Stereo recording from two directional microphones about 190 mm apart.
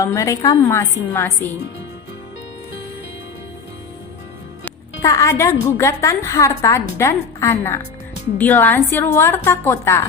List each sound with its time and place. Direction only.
0.0 s a woman's voice: 15° left (ahead or behind)
4.6 s music: 15° left (ahead or behind)
5.6 s a woman's voice: 15° left (ahead or behind)